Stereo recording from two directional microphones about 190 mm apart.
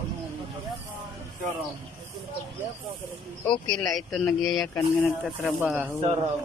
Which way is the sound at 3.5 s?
20° left (ahead or behind).